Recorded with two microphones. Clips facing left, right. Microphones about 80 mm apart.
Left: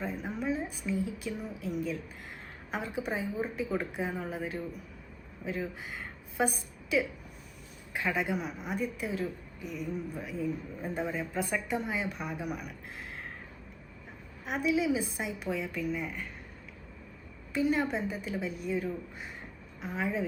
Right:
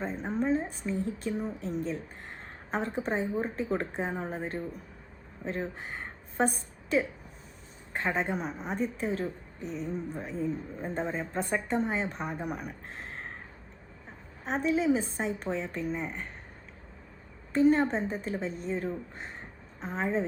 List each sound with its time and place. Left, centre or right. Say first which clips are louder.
0.0 s a sound: right 4 dB; right
1.2 s speech: right 4 dB; right
14.4 s speech: right 2 dB; right
17.5 s a woman's voice: right 5 dB; right